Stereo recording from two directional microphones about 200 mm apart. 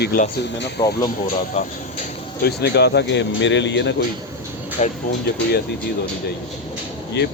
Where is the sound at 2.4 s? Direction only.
55° left (ahead or behind).